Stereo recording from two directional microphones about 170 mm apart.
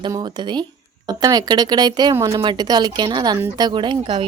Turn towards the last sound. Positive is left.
turn(degrees=-30)  # may be behind; listen again after turning